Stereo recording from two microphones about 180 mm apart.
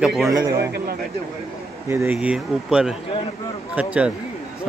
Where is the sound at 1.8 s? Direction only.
10° right (ahead or behind).